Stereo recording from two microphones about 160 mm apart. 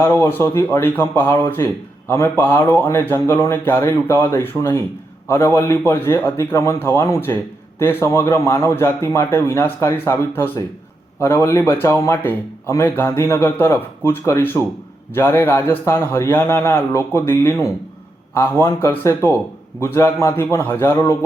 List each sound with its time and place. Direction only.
0.0 s a man's voice: 15° left (ahead or behind)